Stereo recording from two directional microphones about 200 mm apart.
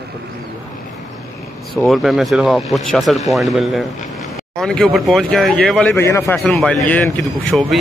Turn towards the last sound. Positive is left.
turn(degrees=0)  # may be behind; listen again after turning